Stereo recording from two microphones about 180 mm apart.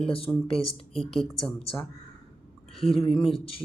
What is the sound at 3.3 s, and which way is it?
Speech, 30° left (ahead or behind).